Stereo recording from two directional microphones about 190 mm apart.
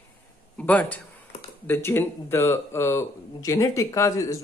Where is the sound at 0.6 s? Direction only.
10° left (ahead or behind).